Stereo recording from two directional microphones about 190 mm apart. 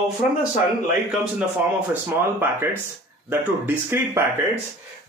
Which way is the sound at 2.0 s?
10° right (ahead or behind).